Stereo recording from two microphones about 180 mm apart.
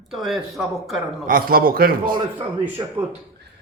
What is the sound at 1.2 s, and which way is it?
Speech, 55° right (ahead or behind).